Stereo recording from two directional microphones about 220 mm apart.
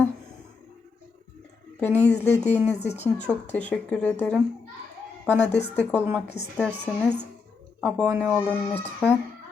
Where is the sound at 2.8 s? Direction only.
30° left (ahead or behind).